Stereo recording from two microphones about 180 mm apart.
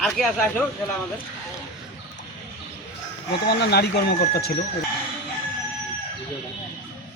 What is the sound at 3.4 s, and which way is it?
Speech, 65° left (ahead or behind).